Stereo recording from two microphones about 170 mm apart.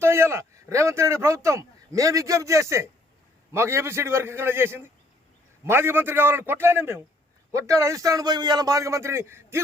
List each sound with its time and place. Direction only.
0.0 s a man's voice: 15° right (ahead or behind)